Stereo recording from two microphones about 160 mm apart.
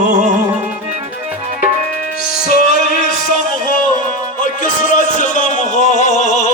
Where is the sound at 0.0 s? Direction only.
50° right (ahead or behind).